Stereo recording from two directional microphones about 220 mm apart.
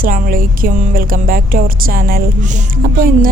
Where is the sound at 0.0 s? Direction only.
40° right (ahead or behind).